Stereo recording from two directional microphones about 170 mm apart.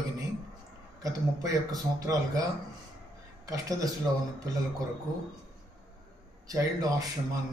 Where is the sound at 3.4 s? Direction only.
20° right (ahead or behind).